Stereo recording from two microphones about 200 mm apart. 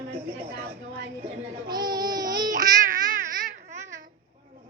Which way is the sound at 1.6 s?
20° right (ahead or behind).